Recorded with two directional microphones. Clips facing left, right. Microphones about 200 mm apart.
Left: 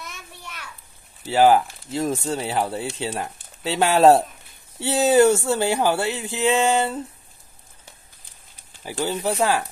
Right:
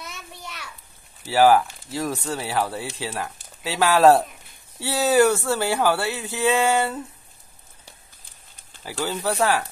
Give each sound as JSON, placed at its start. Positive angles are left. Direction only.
{"t": 1.2, "sound": "speech", "side_deg": 20}
{"t": 8.8, "sound": "speech", "side_deg": 15}